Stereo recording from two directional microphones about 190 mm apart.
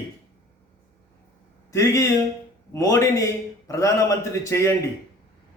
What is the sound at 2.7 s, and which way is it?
A man's voice, 15° left (ahead or behind).